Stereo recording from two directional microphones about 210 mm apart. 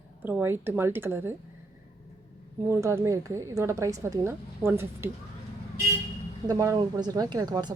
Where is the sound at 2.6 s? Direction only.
15° right (ahead or behind).